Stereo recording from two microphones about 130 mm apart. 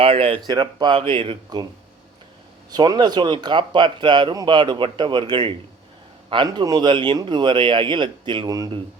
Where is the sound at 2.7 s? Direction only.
30° right (ahead or behind).